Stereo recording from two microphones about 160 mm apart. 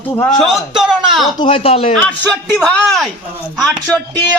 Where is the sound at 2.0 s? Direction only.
5° left (ahead or behind).